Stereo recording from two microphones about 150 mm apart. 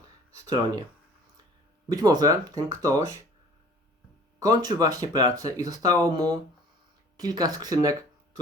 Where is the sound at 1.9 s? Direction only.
25° right (ahead or behind).